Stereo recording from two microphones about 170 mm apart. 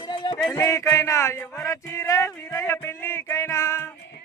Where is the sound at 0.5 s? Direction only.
15° left (ahead or behind).